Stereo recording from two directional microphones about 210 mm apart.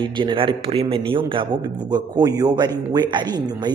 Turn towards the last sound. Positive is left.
turn(degrees=-20)  # may be behind; listen again after turning